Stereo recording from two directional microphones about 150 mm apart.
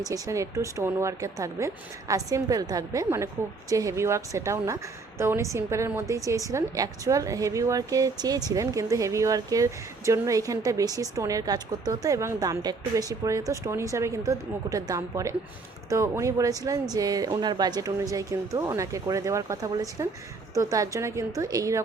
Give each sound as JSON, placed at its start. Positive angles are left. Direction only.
{"t": 0.1, "sound": "a woman's voice", "side_deg": -20}